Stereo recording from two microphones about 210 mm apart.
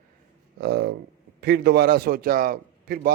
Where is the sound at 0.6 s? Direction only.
50° right (ahead or behind).